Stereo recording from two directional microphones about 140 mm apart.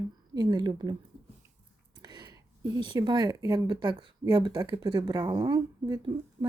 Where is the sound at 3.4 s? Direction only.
30° right (ahead or behind).